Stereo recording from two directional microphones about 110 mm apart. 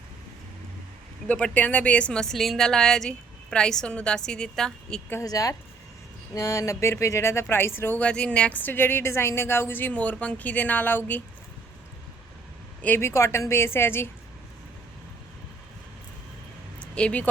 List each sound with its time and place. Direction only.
1.3 s a woman's voice: 10° left (ahead or behind)
5.2 s speech: 35° left (ahead or behind); by 11.2 s 15° left (ahead or behind)
12.8 s speech: 20° left (ahead or behind)
16.8 s speech: 10° left (ahead or behind)